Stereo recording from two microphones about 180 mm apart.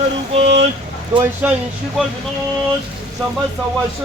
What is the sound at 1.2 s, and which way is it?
Speech, 10° right (ahead or behind).